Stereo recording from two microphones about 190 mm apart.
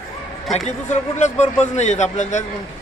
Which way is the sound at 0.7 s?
40° left (ahead or behind).